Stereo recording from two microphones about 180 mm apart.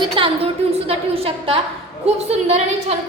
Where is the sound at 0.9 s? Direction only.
30° right (ahead or behind).